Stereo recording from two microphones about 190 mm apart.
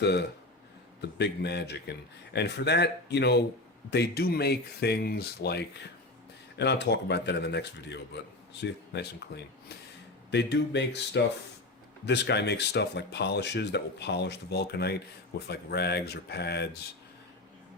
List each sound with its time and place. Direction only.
0.0 s speech: 60° left (ahead or behind)